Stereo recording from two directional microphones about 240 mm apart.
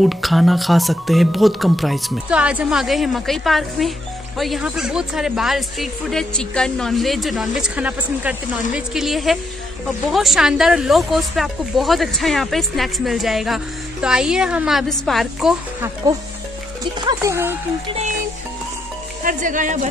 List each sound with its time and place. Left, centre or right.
0.0 s speech: centre
17.0 s speech: centre
19.2 s speech: right